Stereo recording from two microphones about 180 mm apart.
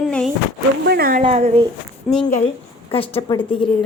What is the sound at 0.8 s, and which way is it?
Speech, 60° right (ahead or behind).